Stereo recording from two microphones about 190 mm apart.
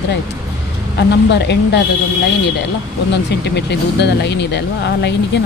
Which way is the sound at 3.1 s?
65° left (ahead or behind).